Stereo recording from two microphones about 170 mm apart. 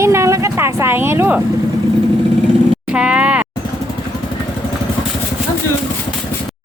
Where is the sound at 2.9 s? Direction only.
5° right (ahead or behind).